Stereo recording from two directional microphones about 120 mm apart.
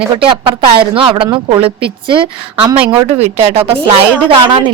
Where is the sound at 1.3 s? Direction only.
35° right (ahead or behind).